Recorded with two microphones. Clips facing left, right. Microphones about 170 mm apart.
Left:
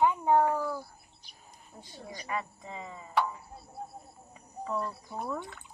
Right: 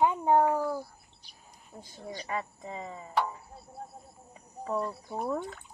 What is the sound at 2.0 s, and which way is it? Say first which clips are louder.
Cricket: right 1 dB; 30° right (ahead or behind).